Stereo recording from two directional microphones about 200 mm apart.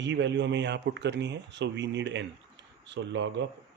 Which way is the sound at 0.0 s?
60° right (ahead or behind).